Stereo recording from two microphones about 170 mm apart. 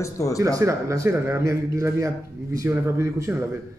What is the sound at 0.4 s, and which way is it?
A man's voice, 20° right (ahead or behind).